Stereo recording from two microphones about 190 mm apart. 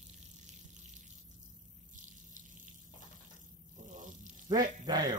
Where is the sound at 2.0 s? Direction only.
40° right (ahead or behind).